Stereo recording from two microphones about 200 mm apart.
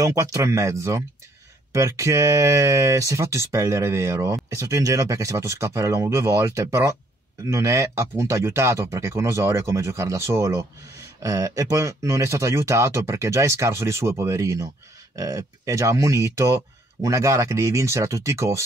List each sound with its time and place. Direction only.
0.0 s speech: 15° right (ahead or behind)